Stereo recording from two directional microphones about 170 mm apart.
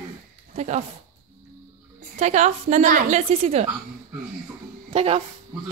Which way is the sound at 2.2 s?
45° right (ahead or behind).